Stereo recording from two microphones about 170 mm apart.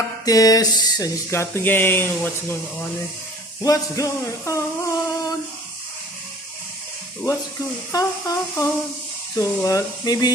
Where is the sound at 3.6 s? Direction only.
20° left (ahead or behind).